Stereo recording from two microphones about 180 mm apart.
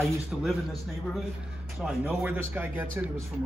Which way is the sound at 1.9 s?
5° right (ahead or behind).